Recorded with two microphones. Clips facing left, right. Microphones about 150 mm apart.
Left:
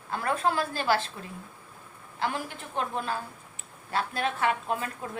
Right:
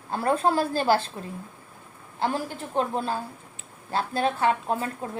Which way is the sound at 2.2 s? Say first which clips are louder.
Right 4 dB; 35° right (ahead or behind).